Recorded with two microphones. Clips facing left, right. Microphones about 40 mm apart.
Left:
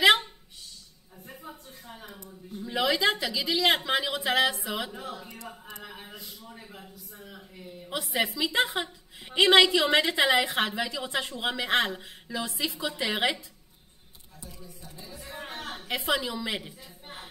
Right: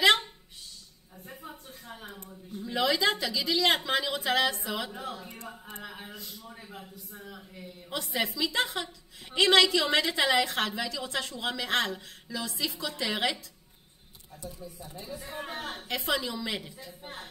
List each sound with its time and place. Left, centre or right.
0.0 s a sound: centre
2.2 s a woman's voice: centre
5.0 s a man's voice: centre
5.4 s speech: right
5.9 s a man's voice: centre
7.9 s a woman's voice: centre
15.9 s a woman's voice: centre